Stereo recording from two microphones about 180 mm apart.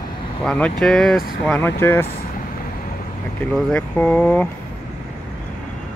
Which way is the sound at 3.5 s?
5° left (ahead or behind).